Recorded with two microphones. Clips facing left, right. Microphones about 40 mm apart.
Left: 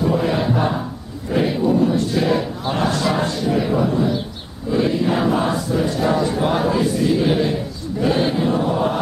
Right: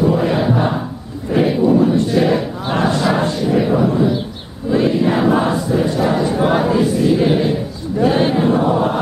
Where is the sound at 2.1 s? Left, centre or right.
Centre.